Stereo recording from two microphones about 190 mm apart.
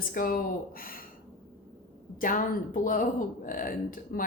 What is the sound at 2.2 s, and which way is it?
Speech, 45° left (ahead or behind).